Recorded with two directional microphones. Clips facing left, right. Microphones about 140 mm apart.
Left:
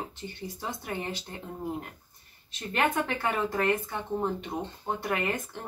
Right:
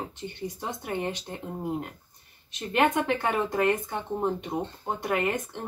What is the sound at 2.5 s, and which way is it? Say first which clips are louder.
A woman's voice: right 4 dB; 20° right (ahead or behind).